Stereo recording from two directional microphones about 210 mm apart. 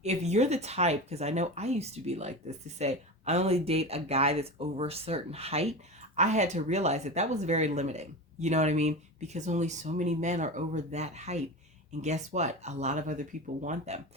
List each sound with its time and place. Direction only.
0.0 s speech: 30° right (ahead or behind)